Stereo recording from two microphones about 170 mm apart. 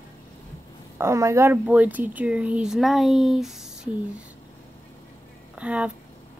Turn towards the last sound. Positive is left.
turn(degrees=-5)  # may be behind; listen again after turning